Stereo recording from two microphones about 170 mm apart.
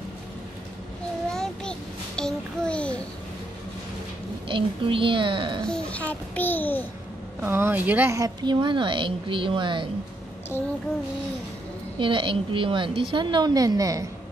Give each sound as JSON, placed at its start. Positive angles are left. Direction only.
{"t": 1.3, "sound": "a sound", "side_deg": 5}
{"t": 4.5, "sound": "a woman's voice", "side_deg": -30}
{"t": 5.7, "sound": "a child's voice", "side_deg": 10}
{"t": 7.4, "sound": "a woman's voice", "side_deg": -15}
{"t": 12.0, "sound": "a woman's voice", "side_deg": -30}